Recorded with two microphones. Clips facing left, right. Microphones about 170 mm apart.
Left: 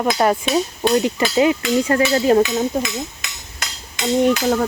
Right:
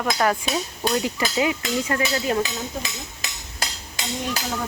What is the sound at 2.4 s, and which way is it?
Stir, 35° right (ahead or behind).